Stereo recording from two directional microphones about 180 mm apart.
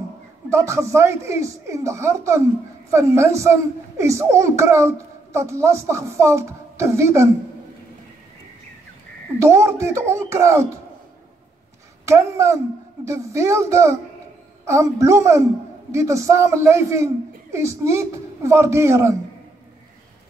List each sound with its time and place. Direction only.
0.5 s a man's voice: 15° right (ahead or behind)
9.4 s a man's voice: 15° right (ahead or behind)
12.1 s a man's voice: 15° right (ahead or behind)